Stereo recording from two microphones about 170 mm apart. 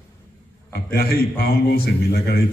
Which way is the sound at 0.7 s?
60° left (ahead or behind).